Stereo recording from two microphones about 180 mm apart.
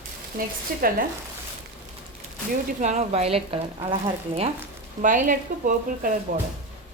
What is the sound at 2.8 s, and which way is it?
Speech, 40° right (ahead or behind).